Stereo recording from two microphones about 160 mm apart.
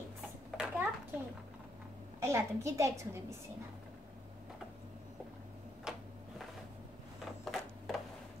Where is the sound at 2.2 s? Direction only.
15° right (ahead or behind).